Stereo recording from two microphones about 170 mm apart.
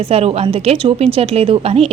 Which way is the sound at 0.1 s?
35° right (ahead or behind).